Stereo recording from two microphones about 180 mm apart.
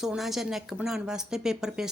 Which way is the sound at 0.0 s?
Centre (ahead or behind).